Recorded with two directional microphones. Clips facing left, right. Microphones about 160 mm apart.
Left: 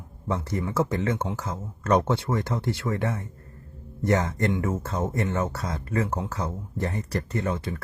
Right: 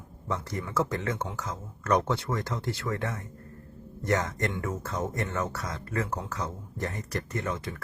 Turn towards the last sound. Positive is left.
turn(degrees=30)  # may be behind; listen again after turning